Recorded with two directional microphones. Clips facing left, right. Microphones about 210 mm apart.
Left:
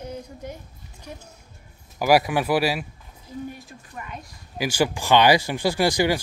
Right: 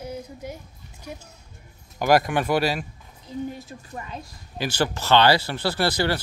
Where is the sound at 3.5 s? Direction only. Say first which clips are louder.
Right 3 dB; 25° right (ahead or behind).